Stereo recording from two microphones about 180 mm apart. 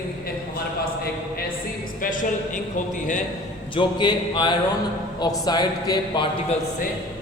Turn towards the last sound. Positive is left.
turn(degrees=25)  # may be behind; listen again after turning